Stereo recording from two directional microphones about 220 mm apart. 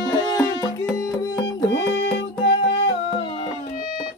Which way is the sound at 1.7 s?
55° left (ahead or behind).